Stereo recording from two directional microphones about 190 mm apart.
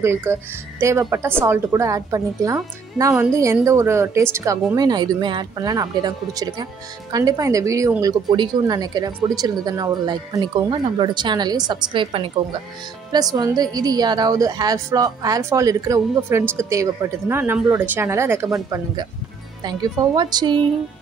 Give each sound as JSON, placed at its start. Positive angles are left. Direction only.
{"t": 0.0, "sound": "a woman's voice", "side_deg": -10}
{"t": 19.6, "sound": "a woman's voice", "side_deg": -20}